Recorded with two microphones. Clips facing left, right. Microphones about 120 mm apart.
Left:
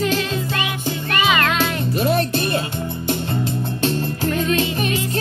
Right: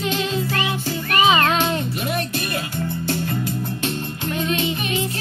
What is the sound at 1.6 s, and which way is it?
Music, 35° left (ahead or behind).